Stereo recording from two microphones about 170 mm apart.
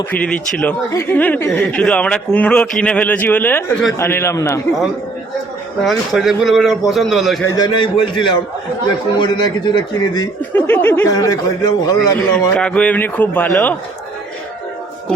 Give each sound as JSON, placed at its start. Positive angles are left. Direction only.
{"t": 0.1, "sound": "speech", "side_deg": 5}
{"t": 5.8, "sound": "a man's voice", "side_deg": 0}
{"t": 7.4, "sound": "speech", "side_deg": 25}
{"t": 10.5, "sound": "speech", "side_deg": 10}
{"t": 12.5, "sound": "speech", "side_deg": 5}